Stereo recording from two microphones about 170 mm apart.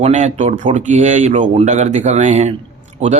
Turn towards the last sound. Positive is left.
turn(degrees=-40)  # may be behind; listen again after turning